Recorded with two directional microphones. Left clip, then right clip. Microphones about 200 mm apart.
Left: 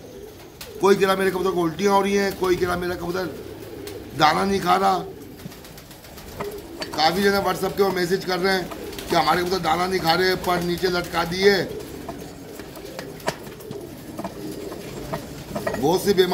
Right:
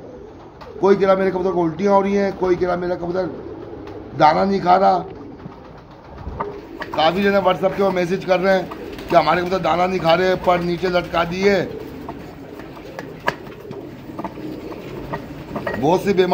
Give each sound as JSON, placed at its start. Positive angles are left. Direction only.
{"t": 0.7, "sound": "a man's voice", "side_deg": -5}
{"t": 7.0, "sound": "speech", "side_deg": -10}
{"t": 15.8, "sound": "speech", "side_deg": -20}